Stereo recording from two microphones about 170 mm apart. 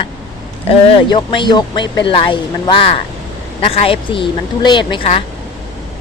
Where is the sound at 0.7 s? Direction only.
30° left (ahead or behind).